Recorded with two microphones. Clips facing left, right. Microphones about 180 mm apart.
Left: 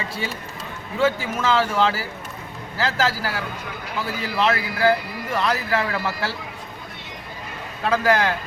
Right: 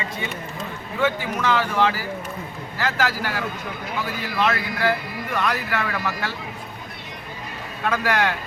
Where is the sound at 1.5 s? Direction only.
30° left (ahead or behind).